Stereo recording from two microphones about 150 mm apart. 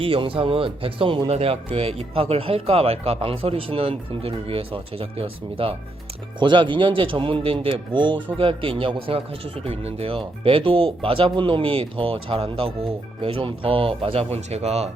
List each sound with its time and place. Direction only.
0.0 s speech: 35° right (ahead or behind)